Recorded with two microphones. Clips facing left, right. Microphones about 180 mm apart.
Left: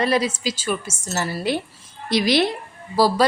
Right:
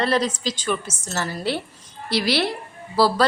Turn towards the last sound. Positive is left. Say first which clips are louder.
# left 1 dB
turn(degrees=15)  # may be behind; listen again after turning